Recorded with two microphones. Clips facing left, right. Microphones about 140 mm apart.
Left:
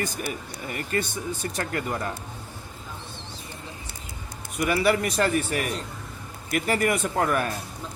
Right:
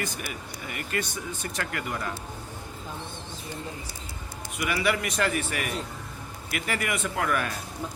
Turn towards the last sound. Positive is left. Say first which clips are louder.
# left 3 dB
turn(degrees=35)  # may be behind; listen again after turning